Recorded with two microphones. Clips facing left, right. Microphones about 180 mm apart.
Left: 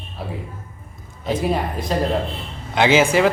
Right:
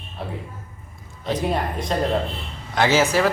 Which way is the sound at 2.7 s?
15° left (ahead or behind).